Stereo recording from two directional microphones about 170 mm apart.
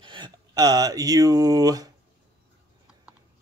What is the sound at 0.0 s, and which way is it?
Speech, 30° right (ahead or behind).